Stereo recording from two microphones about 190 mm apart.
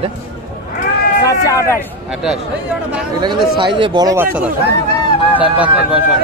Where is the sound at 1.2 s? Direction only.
15° left (ahead or behind).